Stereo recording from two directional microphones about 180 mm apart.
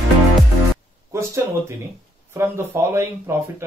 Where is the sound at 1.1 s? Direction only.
15° right (ahead or behind).